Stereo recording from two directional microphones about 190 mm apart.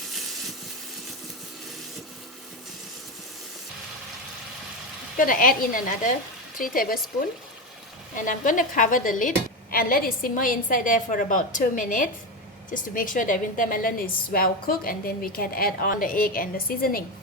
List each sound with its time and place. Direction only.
5.1 s a woman's voice: 45° left (ahead or behind)
8.1 s a woman's voice: 45° left (ahead or behind)